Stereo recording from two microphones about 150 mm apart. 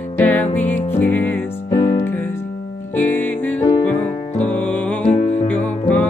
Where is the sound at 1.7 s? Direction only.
30° left (ahead or behind).